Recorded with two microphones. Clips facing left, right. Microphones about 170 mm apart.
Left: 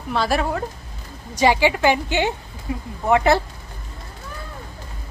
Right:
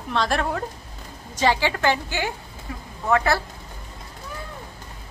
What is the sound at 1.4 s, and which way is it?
A woman's voice, 15° left (ahead or behind).